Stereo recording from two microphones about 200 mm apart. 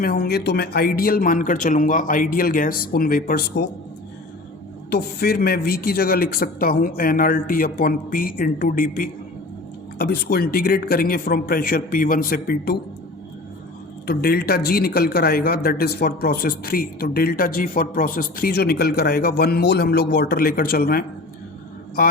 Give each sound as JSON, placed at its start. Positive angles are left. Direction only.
{"t": 0.0, "sound": "speech", "side_deg": 50}
{"t": 4.9, "sound": "speech", "side_deg": 50}
{"t": 14.1, "sound": "speech", "side_deg": 50}